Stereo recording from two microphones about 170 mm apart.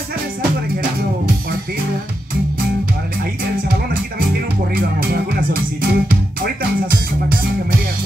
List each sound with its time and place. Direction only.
4.7 s music: 65° right (ahead or behind)